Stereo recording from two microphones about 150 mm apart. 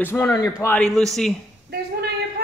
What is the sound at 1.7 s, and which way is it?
Speech, 90° right.